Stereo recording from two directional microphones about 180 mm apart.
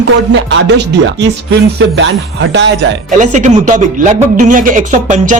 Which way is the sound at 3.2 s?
40° right (ahead or behind).